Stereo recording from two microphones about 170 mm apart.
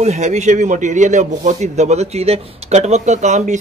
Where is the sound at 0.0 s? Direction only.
40° right (ahead or behind).